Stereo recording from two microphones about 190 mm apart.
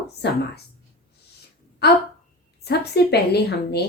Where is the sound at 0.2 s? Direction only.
60° left (ahead or behind).